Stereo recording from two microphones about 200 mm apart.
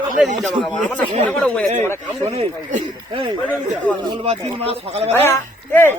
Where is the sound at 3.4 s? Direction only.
5° left (ahead or behind).